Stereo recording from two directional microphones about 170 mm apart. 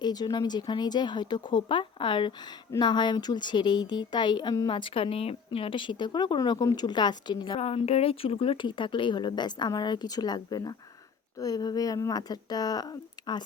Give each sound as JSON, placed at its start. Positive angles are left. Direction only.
{"t": 0.0, "sound": "speech", "side_deg": 25}